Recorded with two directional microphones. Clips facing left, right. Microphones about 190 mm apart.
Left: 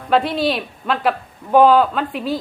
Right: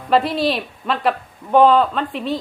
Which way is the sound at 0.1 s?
Centre (ahead or behind).